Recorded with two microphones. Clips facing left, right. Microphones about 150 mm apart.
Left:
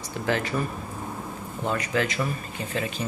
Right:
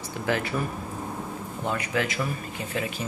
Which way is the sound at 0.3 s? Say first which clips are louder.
Left 1 dB; 10° right (ahead or behind).